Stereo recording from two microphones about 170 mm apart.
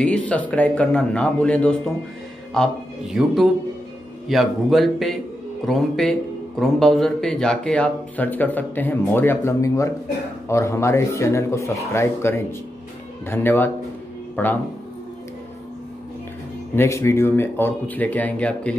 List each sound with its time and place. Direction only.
0.0 s speech: 10° left (ahead or behind)
16.7 s speech: 15° left (ahead or behind)